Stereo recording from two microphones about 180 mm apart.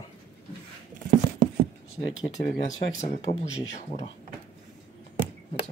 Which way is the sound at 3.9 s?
40° left (ahead or behind).